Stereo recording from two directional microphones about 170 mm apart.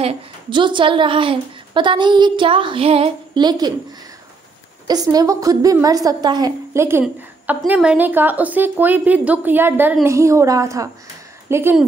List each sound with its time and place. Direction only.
0.0 s a woman's voice: 30° right (ahead or behind)
4.8 s a woman's voice: 20° right (ahead or behind)